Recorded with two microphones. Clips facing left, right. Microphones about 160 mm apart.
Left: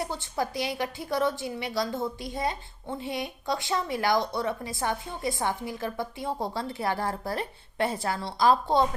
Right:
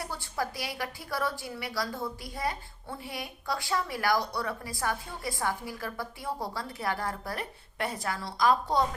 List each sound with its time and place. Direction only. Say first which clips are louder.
0.0 s a woman's voice: left 4 dB; 25° left (ahead or behind)